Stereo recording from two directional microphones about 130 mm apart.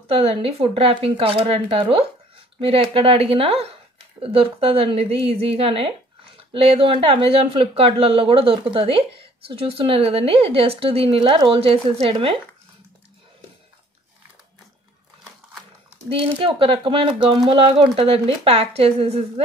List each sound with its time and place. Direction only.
0.1 s a woman's voice: 50° right (ahead or behind)
16.1 s a woman's voice: 45° right (ahead or behind)